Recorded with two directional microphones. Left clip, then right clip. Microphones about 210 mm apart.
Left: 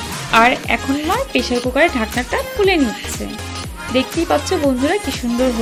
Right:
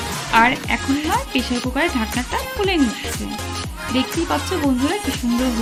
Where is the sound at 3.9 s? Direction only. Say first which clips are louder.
Left 4 dB; 5° right (ahead or behind).